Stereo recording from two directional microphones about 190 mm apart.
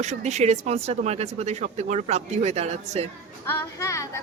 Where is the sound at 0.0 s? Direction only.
35° right (ahead or behind).